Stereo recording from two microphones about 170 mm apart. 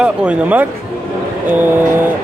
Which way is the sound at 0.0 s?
5° right (ahead or behind).